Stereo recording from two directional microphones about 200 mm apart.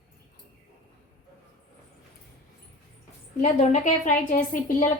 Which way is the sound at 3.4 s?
35° left (ahead or behind).